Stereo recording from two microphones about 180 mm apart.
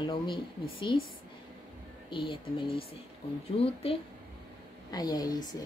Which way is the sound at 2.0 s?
30° left (ahead or behind).